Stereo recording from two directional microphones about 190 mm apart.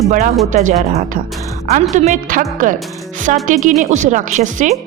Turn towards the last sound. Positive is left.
turn(degrees=-40)  # may be behind; listen again after turning